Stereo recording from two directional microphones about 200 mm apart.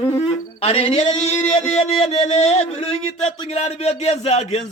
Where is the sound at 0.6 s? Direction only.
30° left (ahead or behind).